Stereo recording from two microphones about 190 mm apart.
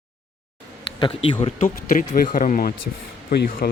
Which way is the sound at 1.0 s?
30° left (ahead or behind).